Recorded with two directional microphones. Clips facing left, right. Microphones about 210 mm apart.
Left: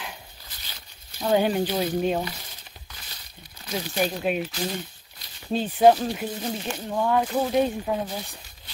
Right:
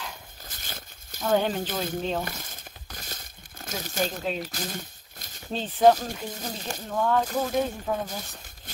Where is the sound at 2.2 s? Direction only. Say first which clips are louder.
Left 2 dB; 45° right (ahead or behind).